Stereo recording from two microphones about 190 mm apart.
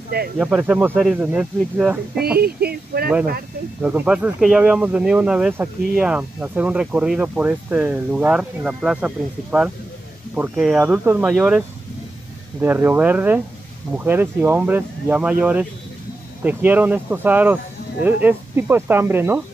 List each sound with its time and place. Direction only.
0.4 s speech: 5° right (ahead or behind)
2.3 s speech: 55° right (ahead or behind)
3.8 s speech: 5° right (ahead or behind)